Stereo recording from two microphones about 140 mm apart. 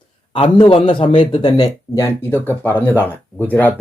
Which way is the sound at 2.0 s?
15° left (ahead or behind).